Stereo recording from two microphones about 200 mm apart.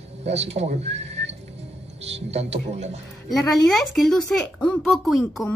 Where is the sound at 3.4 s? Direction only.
Centre (ahead or behind).